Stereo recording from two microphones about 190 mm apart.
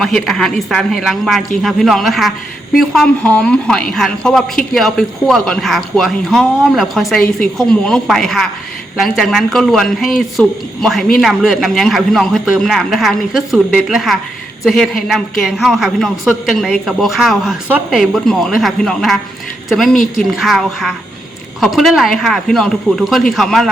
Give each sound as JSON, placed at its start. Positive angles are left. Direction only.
{"t": 0.0, "sound": "a man's voice", "side_deg": 0}